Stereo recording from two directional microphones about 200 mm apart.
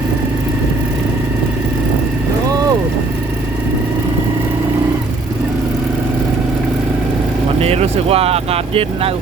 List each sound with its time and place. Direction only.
7.6 s vehicle: 30° right (ahead or behind)